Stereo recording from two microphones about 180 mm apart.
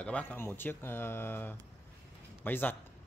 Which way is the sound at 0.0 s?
10° left (ahead or behind).